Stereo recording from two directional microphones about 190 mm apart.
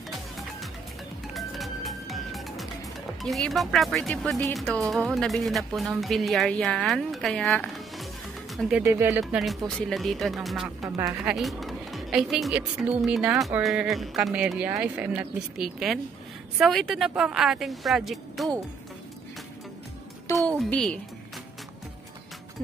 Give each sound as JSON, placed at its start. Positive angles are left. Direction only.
{"t": 1.3, "sound": "music", "side_deg": 0}
{"t": 3.2, "sound": "speech", "side_deg": 0}
{"t": 8.8, "sound": "speech", "side_deg": -15}
{"t": 9.2, "sound": "speech", "side_deg": 0}
{"t": 20.3, "sound": "speech", "side_deg": 5}